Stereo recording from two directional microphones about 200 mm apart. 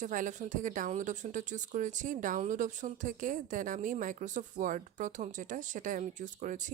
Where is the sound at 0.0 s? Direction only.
40° right (ahead or behind).